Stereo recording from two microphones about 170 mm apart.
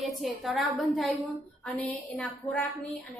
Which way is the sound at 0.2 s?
Centre (ahead or behind).